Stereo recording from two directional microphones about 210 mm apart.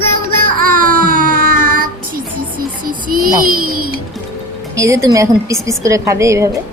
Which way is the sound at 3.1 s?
40° right (ahead or behind).